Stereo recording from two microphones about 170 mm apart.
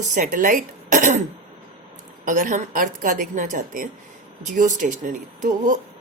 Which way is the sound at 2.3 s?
50° right (ahead or behind).